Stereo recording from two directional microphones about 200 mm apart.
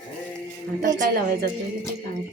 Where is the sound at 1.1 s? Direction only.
50° right (ahead or behind).